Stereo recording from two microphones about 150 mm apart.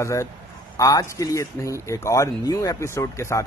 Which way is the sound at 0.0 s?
20° left (ahead or behind).